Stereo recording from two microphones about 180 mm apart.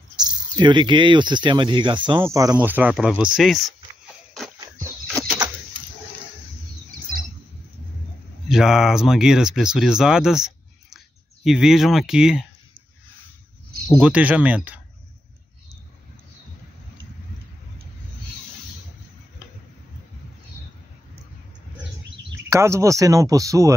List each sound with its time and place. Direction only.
0.2 s speech: 25° right (ahead or behind); by 3.7 s centre (ahead or behind)
8.5 s speech: 5° right (ahead or behind)
13.9 s speech: 10° right (ahead or behind)
22.5 s speech: 15° right (ahead or behind)